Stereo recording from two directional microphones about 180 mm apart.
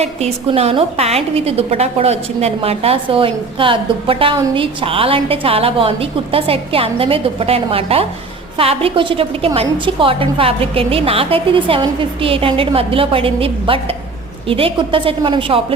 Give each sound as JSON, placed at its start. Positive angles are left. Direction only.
{"t": 0.0, "sound": "a woman's voice", "side_deg": -35}